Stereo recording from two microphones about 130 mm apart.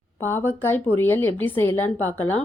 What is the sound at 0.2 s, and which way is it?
A woman's voice, 15° left (ahead or behind).